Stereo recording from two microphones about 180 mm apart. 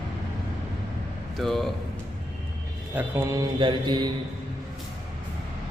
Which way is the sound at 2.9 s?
10° right (ahead or behind).